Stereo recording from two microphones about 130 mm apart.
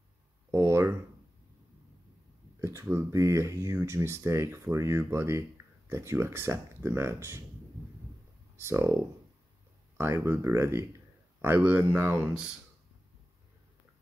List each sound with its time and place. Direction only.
0.5 s a sound: 20° right (ahead or behind)
2.6 s speech: 20° right (ahead or behind)
8.5 s speech: 20° right (ahead or behind)
9.9 s speech: 20° right (ahead or behind)